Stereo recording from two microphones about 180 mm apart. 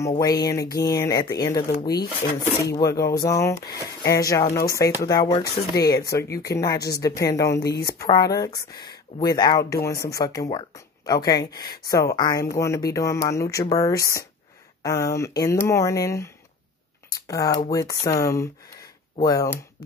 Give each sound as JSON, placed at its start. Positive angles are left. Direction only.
{"t": 0.1, "sound": "speech", "side_deg": 20}
{"t": 7.6, "sound": "speech", "side_deg": 60}
{"t": 8.0, "sound": "speech", "side_deg": 20}